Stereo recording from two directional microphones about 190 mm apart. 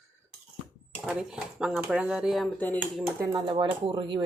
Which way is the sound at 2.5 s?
10° left (ahead or behind).